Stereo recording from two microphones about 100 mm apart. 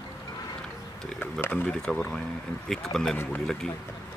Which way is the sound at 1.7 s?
5° left (ahead or behind).